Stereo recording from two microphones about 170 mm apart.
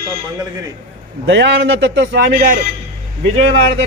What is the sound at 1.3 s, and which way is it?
A man's voice, 90° right.